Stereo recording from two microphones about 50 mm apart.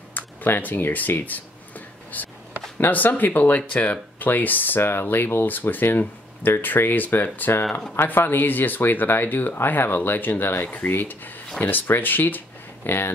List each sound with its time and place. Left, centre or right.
0.1 s speech: left
2.1 s a sound: left
2.8 s speech: left
10.6 s speech: left
10.9 s speech: left